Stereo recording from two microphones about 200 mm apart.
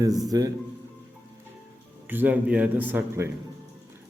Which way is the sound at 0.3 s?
20° right (ahead or behind).